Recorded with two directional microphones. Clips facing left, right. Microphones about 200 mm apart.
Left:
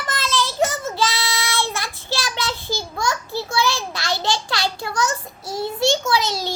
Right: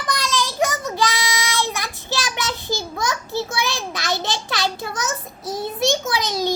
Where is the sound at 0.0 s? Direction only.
15° right (ahead or behind).